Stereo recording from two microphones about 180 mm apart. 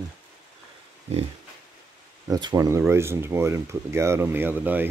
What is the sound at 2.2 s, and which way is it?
Speech, 20° right (ahead or behind).